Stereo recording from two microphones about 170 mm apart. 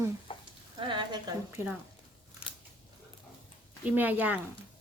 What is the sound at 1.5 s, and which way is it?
Speech, 10° right (ahead or behind).